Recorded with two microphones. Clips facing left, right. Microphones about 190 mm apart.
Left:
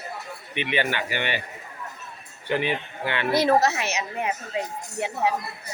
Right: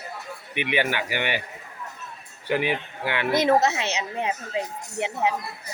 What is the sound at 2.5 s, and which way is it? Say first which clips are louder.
Speech: right 1 dB; 10° right (ahead or behind).